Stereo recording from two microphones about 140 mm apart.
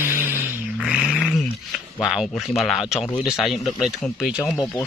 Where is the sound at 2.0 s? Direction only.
Centre (ahead or behind).